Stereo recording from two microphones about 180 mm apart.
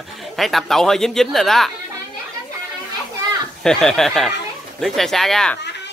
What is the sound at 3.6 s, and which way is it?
Speech, 5° left (ahead or behind).